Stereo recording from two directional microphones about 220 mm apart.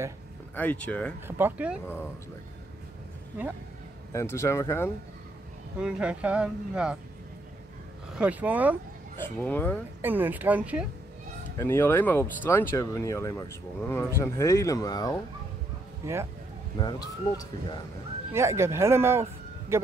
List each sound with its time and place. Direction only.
0.6 s speech: 5° left (ahead or behind)
1.2 s speech: 5° right (ahead or behind)
4.1 s speech: 15° left (ahead or behind)
5.8 s speech: 5° right (ahead or behind)
8.2 s speech: 5° right (ahead or behind)
9.2 s speech: 10° left (ahead or behind)
10.0 s speech: 10° right (ahead or behind)
11.5 s speech: 10° left (ahead or behind)
16.0 s speech: 10° right (ahead or behind)
16.7 s speech: 20° left (ahead or behind)
18.3 s speech: 10° right (ahead or behind)